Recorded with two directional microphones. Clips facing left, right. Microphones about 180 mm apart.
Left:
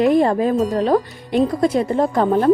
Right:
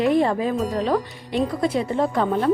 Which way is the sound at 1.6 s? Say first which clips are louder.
Left 4 dB; 45° left (ahead or behind).